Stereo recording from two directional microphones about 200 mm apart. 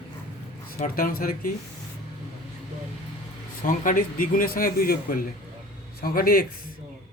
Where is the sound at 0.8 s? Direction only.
45° left (ahead or behind).